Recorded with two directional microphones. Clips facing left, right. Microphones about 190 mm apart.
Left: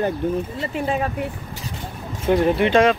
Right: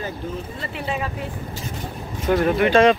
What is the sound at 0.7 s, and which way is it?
Speech, 45° left (ahead or behind).